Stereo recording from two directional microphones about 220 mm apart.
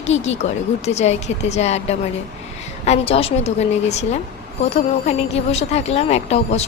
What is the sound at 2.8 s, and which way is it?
Speech, 25° left (ahead or behind).